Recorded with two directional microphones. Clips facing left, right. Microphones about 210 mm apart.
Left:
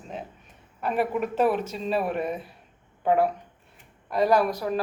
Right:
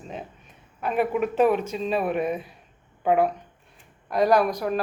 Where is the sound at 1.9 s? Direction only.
Centre (ahead or behind).